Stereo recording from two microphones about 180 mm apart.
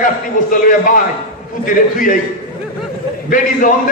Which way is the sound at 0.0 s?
50° left (ahead or behind).